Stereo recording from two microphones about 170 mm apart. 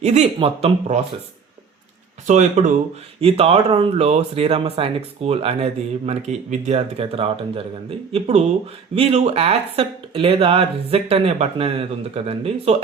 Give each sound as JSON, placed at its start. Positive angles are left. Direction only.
{"t": 0.0, "sound": "speech", "side_deg": -40}
{"t": 2.2, "sound": "speech", "side_deg": -45}
{"t": 3.2, "sound": "speech", "side_deg": -35}